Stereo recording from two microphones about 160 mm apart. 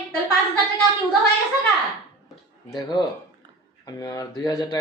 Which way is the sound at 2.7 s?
25° left (ahead or behind).